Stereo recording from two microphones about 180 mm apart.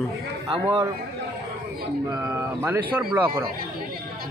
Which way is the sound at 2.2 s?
15° right (ahead or behind).